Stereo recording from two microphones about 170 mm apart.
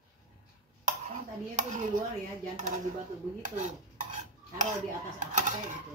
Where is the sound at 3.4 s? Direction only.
45° right (ahead or behind).